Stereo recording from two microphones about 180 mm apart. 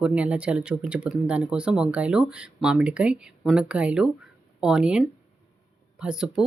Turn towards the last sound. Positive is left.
turn(degrees=-5)  # may be behind; listen again after turning